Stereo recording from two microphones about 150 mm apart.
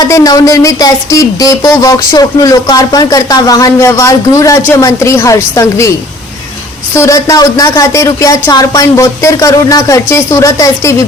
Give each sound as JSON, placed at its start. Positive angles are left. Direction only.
{"t": 0.0, "sound": "speech", "side_deg": 25}
{"t": 6.9, "sound": "speech", "side_deg": 20}